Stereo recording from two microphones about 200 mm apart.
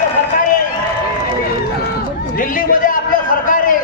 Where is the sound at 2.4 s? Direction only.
45° left (ahead or behind).